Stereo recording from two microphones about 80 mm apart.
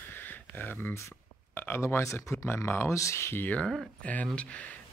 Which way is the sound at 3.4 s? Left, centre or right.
Centre.